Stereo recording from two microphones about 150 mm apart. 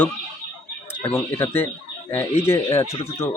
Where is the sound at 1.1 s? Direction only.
15° left (ahead or behind).